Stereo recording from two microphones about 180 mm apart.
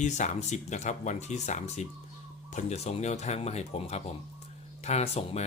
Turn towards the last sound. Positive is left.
turn(degrees=35)  # may be behind; listen again after turning